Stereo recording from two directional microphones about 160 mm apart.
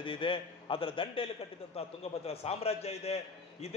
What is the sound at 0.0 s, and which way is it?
A man's voice, 30° left (ahead or behind).